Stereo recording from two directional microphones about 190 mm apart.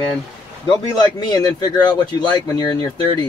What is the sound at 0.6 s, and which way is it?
A man's voice, 20° left (ahead or behind).